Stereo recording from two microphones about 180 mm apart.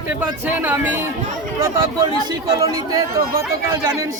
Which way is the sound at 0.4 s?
10° right (ahead or behind).